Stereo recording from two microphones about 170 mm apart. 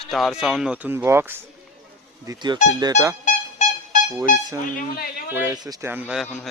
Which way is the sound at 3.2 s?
45° left (ahead or behind).